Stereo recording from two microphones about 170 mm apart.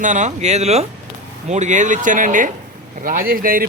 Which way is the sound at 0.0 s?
45° right (ahead or behind).